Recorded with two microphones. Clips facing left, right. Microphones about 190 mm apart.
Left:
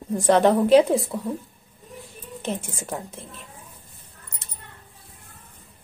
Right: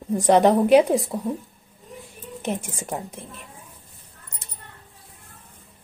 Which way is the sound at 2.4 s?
15° right (ahead or behind).